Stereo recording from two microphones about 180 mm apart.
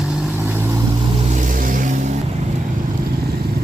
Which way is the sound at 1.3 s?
45° right (ahead or behind).